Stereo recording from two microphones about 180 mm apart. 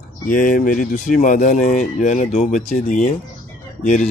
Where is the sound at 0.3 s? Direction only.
50° left (ahead or behind).